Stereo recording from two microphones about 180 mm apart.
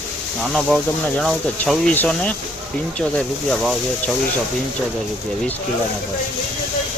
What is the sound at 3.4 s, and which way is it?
Speech, 5° left (ahead or behind).